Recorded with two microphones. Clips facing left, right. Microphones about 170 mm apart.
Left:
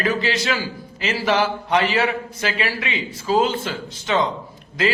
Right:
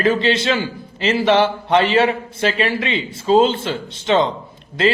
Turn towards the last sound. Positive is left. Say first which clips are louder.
# right 4 dB
turn(degrees=-30)  # may be behind; listen again after turning